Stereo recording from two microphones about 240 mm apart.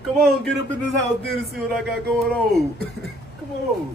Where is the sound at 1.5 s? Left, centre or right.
Centre.